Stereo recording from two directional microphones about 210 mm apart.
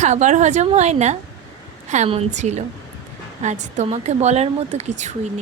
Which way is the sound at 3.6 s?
35° right (ahead or behind).